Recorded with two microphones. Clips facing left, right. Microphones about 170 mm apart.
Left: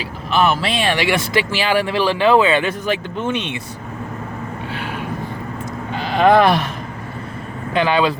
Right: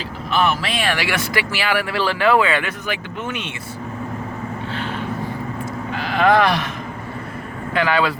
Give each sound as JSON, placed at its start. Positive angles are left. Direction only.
{"t": 0.3, "sound": "speech", "side_deg": 25}
{"t": 4.7, "sound": "a sound", "side_deg": 10}
{"t": 5.9, "sound": "speech", "side_deg": 25}
{"t": 7.7, "sound": "speech", "side_deg": 20}